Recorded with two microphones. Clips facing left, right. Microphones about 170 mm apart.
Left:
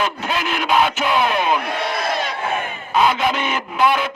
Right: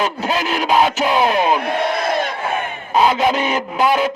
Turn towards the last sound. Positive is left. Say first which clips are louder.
# right 2 dB
turn(degrees=-40)  # may be behind; listen again after turning